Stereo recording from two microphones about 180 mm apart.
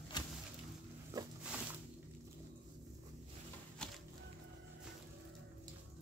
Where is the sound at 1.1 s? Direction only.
20° right (ahead or behind).